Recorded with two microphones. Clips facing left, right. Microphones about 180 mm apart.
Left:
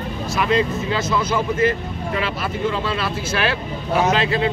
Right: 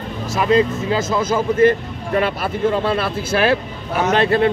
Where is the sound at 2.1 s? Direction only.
50° right (ahead or behind).